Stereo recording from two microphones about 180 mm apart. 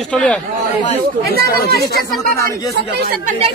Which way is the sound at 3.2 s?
45° right (ahead or behind).